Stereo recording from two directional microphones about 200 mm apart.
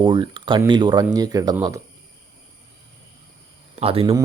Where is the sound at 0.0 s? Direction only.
25° right (ahead or behind).